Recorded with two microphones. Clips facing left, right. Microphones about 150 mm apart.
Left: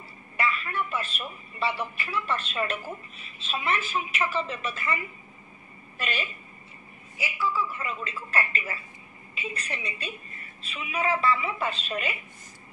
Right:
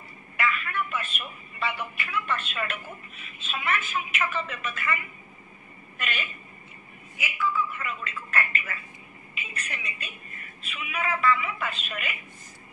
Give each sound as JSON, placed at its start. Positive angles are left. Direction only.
{"t": 0.4, "sound": "a man's voice", "side_deg": 30}